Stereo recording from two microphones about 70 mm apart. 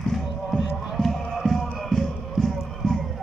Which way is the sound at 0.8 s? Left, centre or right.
Centre.